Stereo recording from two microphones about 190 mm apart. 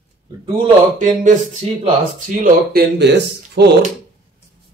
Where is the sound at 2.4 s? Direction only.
60° right (ahead or behind).